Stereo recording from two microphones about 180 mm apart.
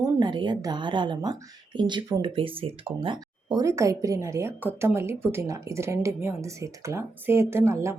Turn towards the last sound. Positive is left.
turn(degrees=-15)  # may be behind; listen again after turning